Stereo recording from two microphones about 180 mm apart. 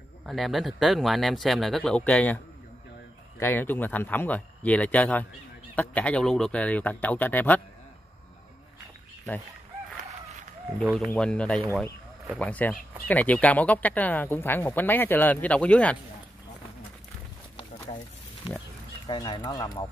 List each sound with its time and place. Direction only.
0.3 s speech: centre (ahead or behind)
11.1 s speech: 5° left (ahead or behind)
19.0 s speech: 25° left (ahead or behind)